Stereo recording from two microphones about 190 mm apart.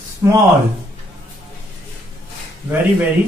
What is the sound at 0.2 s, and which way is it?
Speech, 15° right (ahead or behind).